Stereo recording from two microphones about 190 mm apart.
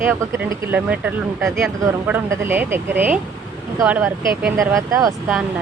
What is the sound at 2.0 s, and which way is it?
Speech, 10° right (ahead or behind).